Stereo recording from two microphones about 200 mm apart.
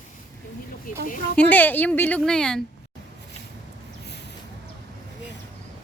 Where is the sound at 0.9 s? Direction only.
45° left (ahead or behind).